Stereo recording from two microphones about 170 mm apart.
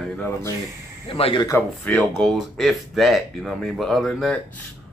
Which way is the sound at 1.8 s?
5° left (ahead or behind).